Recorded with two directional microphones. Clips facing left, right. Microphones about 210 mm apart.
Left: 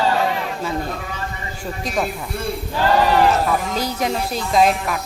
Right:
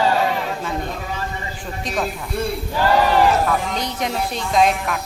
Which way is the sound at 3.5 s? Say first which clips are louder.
Left 1 dB; 5° left (ahead or behind).